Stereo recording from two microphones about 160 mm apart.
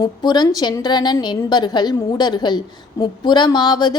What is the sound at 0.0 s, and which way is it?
A woman's voice, 25° left (ahead or behind).